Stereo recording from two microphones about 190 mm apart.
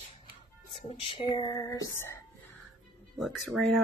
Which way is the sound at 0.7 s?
25° left (ahead or behind).